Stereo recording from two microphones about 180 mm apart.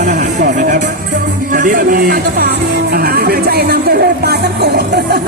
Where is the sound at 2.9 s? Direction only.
60° right (ahead or behind).